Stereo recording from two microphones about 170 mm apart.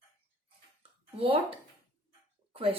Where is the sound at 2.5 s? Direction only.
35° right (ahead or behind).